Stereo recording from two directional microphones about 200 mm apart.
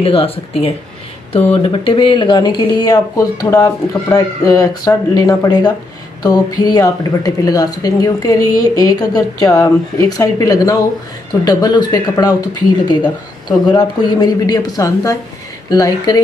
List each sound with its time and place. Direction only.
0.0 s speech: 30° left (ahead or behind)